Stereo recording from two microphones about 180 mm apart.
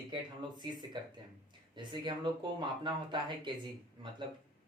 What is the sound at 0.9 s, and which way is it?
Speech, 25° right (ahead or behind).